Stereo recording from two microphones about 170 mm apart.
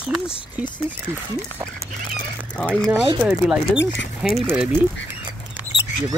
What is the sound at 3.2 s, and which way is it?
Speech, 5° right (ahead or behind).